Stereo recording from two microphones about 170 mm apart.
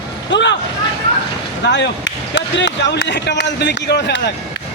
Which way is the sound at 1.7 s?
90° left.